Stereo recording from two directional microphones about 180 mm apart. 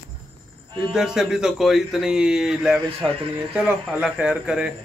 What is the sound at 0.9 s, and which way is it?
Speech, 5° right (ahead or behind).